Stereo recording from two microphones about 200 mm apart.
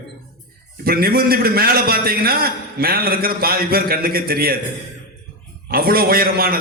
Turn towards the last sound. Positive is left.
turn(degrees=-50)  # may be behind; listen again after turning